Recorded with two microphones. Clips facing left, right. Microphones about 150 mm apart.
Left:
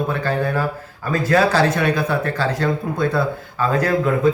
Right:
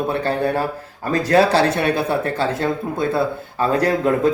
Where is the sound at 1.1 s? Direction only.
35° right (ahead or behind).